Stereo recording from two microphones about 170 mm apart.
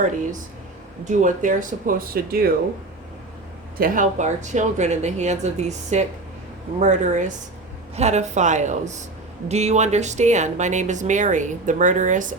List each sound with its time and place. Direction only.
1.0 s speech: 50° right (ahead or behind)
3.8 s speech: 55° right (ahead or behind)